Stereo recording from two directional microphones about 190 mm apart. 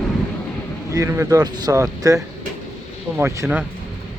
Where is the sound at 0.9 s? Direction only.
15° right (ahead or behind).